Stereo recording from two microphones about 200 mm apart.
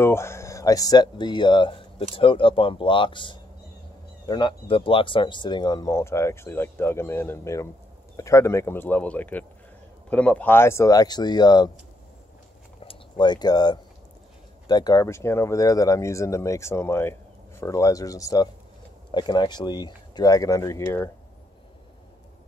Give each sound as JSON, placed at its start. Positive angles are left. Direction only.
{"t": 0.0, "sound": "speech", "side_deg": 15}
{"t": 12.8, "sound": "a sound", "side_deg": 25}
{"t": 14.7, "sound": "speech", "side_deg": 20}